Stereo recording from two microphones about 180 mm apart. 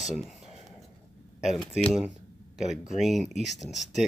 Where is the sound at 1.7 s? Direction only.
35° left (ahead or behind).